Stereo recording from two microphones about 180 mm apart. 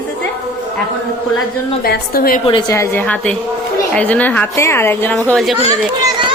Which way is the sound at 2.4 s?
25° left (ahead or behind).